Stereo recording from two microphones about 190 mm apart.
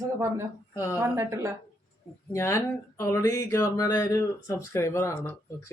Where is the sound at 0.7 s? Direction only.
15° left (ahead or behind).